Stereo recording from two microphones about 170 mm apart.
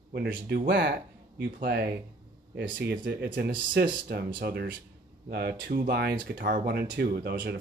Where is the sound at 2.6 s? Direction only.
80° right.